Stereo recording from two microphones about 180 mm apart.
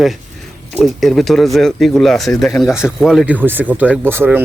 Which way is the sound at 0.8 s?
Centre (ahead or behind).